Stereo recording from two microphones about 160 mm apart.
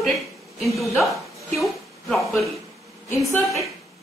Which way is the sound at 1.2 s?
Centre (ahead or behind).